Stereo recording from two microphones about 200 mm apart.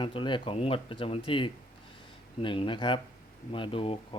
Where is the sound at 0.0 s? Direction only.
25° left (ahead or behind).